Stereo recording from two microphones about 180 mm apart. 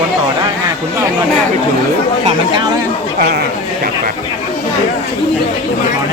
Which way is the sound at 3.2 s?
60° right (ahead or behind).